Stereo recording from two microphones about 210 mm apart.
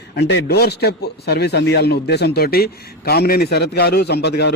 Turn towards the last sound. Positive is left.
turn(degrees=55)  # may be behind; listen again after turning